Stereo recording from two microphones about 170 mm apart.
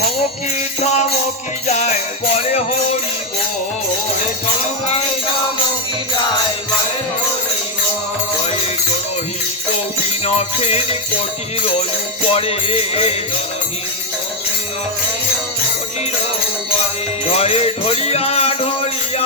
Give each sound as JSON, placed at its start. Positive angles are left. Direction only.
{"t": 0.8, "sound": "music", "side_deg": 40}
{"t": 10.2, "sound": "music", "side_deg": 40}
{"t": 12.3, "sound": "music", "side_deg": 35}
{"t": 17.3, "sound": "music", "side_deg": 35}